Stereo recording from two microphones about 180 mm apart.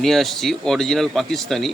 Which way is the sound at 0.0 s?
Centre (ahead or behind).